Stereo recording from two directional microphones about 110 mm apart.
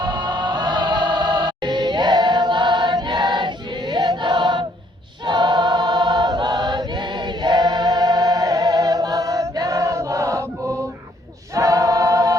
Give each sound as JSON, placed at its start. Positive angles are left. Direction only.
{"t": 0.0, "sound": "music", "side_deg": -40}
{"t": 5.2, "sound": "choir", "side_deg": -45}
{"t": 11.5, "sound": "choir", "side_deg": -30}